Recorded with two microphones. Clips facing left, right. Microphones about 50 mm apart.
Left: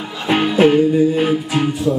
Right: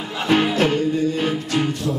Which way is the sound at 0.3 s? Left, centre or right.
Centre.